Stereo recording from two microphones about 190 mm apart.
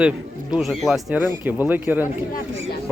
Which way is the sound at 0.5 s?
Centre (ahead or behind).